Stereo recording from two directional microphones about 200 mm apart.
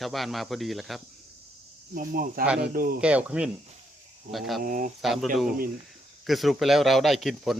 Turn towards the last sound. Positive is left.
turn(degrees=0)  # may be behind; listen again after turning